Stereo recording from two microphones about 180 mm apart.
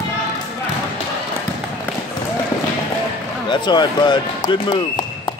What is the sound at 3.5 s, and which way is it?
Speech, 25° left (ahead or behind).